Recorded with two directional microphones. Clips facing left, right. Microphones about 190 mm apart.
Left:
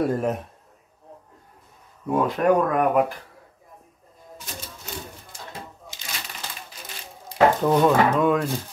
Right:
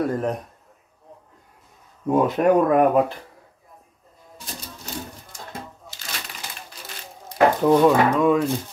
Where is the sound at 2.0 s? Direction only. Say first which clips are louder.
Right 2 dB; 20° right (ahead or behind).